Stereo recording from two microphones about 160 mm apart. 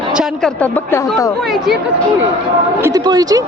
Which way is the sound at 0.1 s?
5° right (ahead or behind).